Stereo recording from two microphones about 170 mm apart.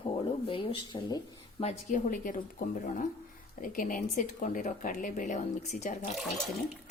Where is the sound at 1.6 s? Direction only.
45° left (ahead or behind).